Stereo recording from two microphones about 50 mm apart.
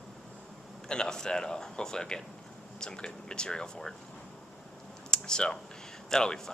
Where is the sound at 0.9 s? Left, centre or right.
Centre.